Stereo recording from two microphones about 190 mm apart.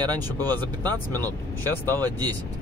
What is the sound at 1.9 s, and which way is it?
Speech, 10° left (ahead or behind).